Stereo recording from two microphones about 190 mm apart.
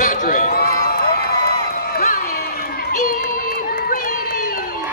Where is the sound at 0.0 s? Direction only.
45° left (ahead or behind).